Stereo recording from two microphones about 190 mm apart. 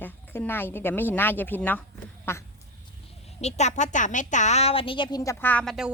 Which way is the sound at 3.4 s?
35° left (ahead or behind).